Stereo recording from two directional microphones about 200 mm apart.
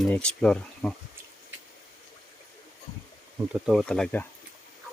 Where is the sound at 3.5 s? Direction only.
5° right (ahead or behind).